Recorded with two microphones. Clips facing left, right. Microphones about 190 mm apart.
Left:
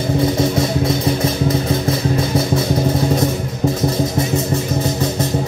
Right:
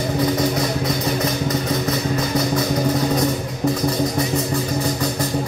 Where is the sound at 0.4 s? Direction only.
25° left (ahead or behind).